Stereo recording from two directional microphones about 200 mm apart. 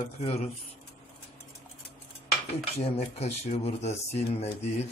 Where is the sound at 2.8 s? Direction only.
30° left (ahead or behind).